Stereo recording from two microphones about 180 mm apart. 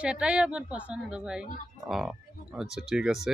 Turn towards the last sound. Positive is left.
turn(degrees=-5)  # may be behind; listen again after turning